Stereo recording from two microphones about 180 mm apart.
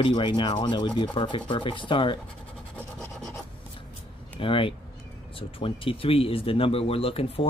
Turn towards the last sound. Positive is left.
turn(degrees=30)  # may be behind; listen again after turning